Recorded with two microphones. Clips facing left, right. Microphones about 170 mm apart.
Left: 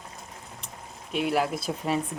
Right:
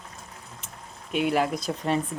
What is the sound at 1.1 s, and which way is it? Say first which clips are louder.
Speech: right 2 dB; centre (ahead or behind).